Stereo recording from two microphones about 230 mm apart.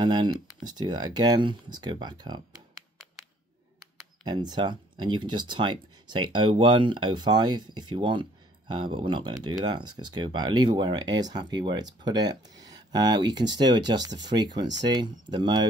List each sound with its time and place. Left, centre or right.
0.0 s speech: centre
4.2 s speech: centre